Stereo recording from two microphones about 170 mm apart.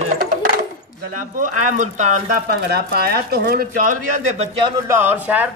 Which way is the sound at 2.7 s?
65° right (ahead or behind).